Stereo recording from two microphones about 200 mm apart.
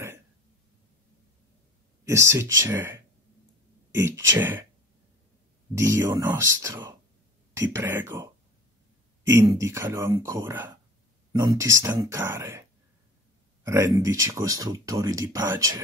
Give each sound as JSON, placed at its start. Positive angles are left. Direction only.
{"t": 2.0, "sound": "speech", "side_deg": -15}
{"t": 5.8, "sound": "speech", "side_deg": -15}
{"t": 9.3, "sound": "speech", "side_deg": -15}
{"t": 13.7, "sound": "speech", "side_deg": -15}